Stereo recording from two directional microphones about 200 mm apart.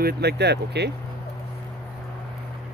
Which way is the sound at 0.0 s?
55° right (ahead or behind).